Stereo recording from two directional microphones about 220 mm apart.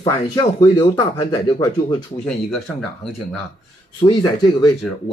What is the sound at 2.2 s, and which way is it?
Speech, centre (ahead or behind).